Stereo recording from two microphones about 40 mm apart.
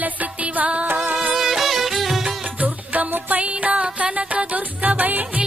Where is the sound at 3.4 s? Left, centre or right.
Right.